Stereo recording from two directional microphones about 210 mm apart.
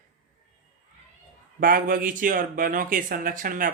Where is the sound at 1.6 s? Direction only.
40° right (ahead or behind).